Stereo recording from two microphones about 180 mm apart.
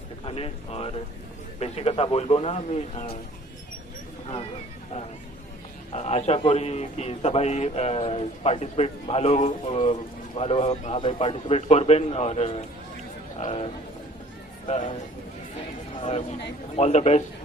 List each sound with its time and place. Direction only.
0.3 s a man's voice: 35° left (ahead or behind)
5.9 s a man's voice: 35° left (ahead or behind)
16.0 s a man's voice: 30° left (ahead or behind)